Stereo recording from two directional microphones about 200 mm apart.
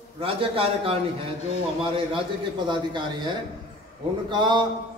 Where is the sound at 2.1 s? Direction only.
25° right (ahead or behind).